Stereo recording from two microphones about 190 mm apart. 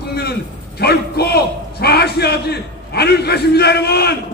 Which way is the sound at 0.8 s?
55° left (ahead or behind).